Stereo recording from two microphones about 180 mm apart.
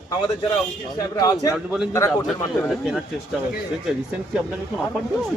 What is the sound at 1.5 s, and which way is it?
Speech, 5° right (ahead or behind).